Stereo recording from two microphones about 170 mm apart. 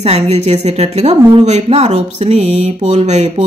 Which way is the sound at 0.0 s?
40° right (ahead or behind).